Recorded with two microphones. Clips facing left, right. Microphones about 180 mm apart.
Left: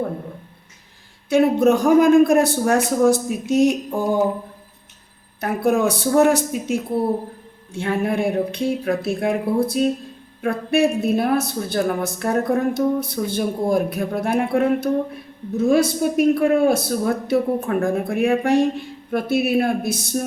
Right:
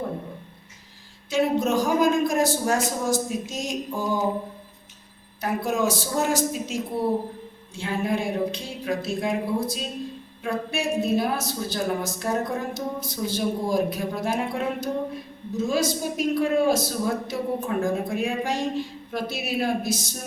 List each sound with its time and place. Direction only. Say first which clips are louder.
1.3 s a woman's voice: left 7 dB; 60° left (ahead or behind)
5.4 s a woman's voice: left 6 dB; 60° left (ahead or behind)